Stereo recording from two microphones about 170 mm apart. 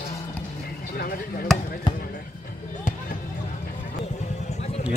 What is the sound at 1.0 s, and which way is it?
Basketball bounce, 60° left (ahead or behind).